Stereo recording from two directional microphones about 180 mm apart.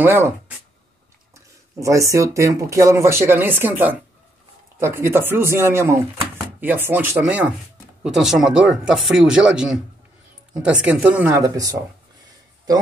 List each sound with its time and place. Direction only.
0.0 s speech: 15° right (ahead or behind)
1.3 s speech: 15° right (ahead or behind)